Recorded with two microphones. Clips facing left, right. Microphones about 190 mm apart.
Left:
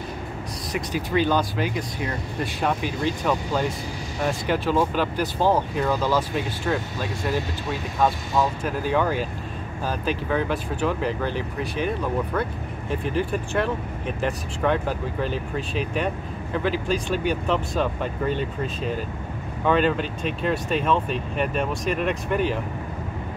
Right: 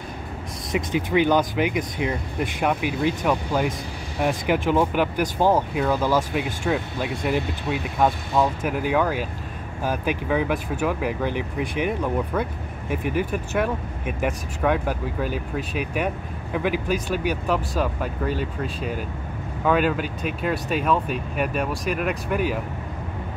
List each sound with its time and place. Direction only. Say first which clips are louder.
0.7 s speech: right 4 dB; 20° right (ahead or behind)
12.9 s speech: even; 10° right (ahead or behind)